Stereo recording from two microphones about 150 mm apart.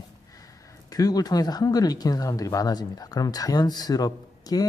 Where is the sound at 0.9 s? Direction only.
25° left (ahead or behind).